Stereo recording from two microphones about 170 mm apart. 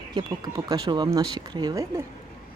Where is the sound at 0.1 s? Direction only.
25° right (ahead or behind).